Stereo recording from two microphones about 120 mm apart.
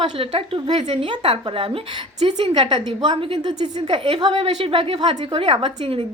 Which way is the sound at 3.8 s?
50° right (ahead or behind).